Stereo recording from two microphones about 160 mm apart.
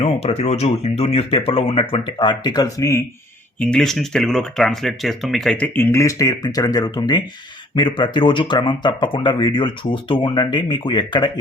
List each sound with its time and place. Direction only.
0.0 s speech: 40° left (ahead or behind); by 3.0 s 20° left (ahead or behind)
3.6 s speech: 5° left (ahead or behind); by 11.3 s 30° left (ahead or behind)